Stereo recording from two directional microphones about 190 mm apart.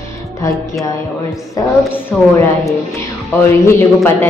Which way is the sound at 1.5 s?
15° left (ahead or behind).